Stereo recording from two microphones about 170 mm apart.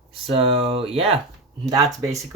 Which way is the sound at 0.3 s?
35° right (ahead or behind).